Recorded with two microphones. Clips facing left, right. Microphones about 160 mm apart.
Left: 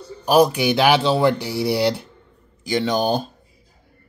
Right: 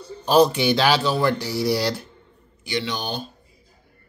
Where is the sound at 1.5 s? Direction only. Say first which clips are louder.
Left 1 dB; 60° left (ahead or behind).